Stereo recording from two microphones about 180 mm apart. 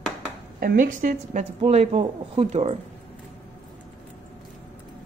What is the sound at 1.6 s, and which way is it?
Speech, 35° right (ahead or behind).